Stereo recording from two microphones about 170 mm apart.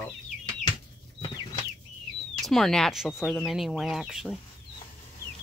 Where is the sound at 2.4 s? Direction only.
Centre (ahead or behind).